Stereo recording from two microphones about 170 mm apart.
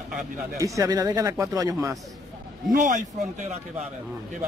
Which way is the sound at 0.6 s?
20° right (ahead or behind).